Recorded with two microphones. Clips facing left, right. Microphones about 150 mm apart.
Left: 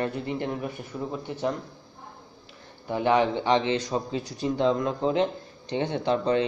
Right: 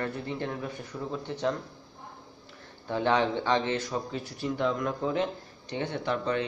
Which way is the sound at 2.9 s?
10° left (ahead or behind).